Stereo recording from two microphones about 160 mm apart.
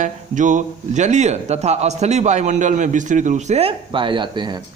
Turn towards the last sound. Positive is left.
turn(degrees=-30)  # may be behind; listen again after turning